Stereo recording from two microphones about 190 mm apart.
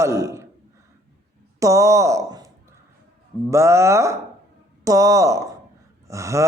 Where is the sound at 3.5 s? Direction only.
15° right (ahead or behind).